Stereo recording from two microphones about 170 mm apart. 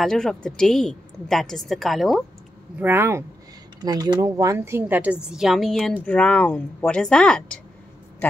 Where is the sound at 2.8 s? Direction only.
15° right (ahead or behind).